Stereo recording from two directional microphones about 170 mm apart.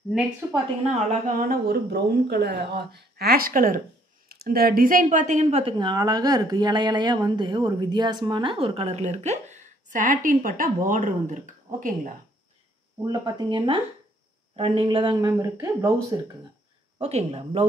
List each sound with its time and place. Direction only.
0.4 s a woman's voice: 10° right (ahead or behind)
1.2 s speech: 60° right (ahead or behind)
13.0 s speech: 25° right (ahead or behind)
17.0 s speech: 35° right (ahead or behind)